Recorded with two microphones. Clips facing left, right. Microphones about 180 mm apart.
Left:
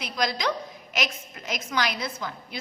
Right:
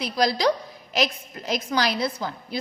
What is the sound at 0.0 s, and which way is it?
A woman's voice, 35° right (ahead or behind).